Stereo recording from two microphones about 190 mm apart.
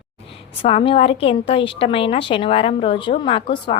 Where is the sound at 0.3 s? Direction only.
30° left (ahead or behind).